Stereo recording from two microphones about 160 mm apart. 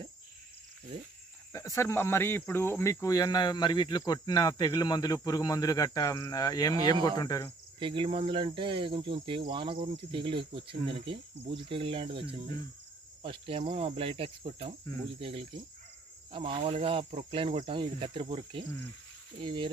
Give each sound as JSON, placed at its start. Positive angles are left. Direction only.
{"t": 1.5, "sound": "cricket", "side_deg": 20}
{"t": 7.8, "sound": "speech", "side_deg": -35}